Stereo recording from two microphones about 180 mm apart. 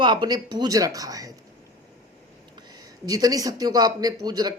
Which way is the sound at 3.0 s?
20° right (ahead or behind).